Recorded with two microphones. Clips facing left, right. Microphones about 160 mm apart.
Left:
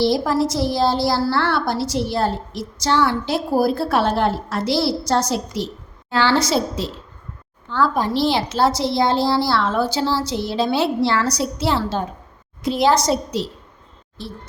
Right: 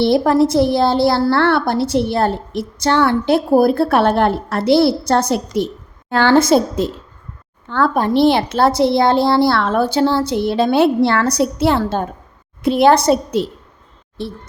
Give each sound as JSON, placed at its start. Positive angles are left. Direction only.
{"t": 0.0, "sound": "a woman's voice", "side_deg": -60}